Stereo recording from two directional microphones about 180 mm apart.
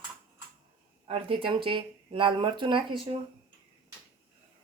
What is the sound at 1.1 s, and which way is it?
Speech, 30° right (ahead or behind).